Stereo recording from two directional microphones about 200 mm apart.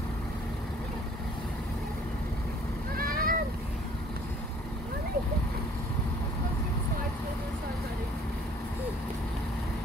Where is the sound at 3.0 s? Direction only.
45° right (ahead or behind).